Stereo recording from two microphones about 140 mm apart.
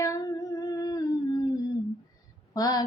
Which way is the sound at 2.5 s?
25° left (ahead or behind).